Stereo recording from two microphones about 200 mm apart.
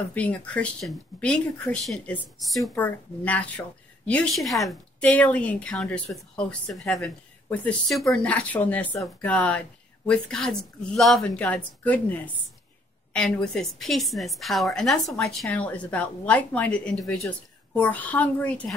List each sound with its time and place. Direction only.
0.1 s a woman's voice: 5° left (ahead or behind)